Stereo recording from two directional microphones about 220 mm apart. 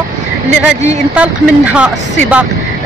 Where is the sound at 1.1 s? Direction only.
5° right (ahead or behind).